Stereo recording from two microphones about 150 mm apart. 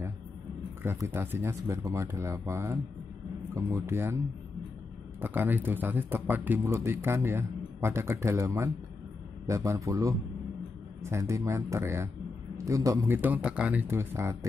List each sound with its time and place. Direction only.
0.8 s speech: 15° right (ahead or behind)
5.2 s speech: 15° right (ahead or behind)